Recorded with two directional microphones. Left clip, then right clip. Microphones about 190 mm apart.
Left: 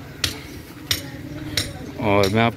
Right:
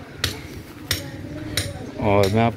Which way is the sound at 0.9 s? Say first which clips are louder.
Left 2 dB; 60° right (ahead or behind).